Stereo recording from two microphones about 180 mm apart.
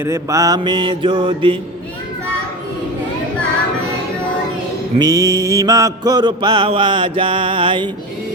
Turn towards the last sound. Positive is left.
turn(degrees=-25)  # may be behind; listen again after turning